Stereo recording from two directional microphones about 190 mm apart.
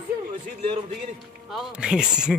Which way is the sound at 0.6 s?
35° right (ahead or behind).